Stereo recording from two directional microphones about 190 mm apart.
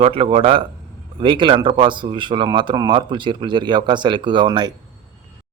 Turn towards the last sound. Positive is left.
turn(degrees=-25)  # may be behind; listen again after turning